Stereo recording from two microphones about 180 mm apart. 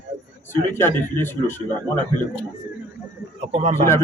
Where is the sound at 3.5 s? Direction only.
35° right (ahead or behind).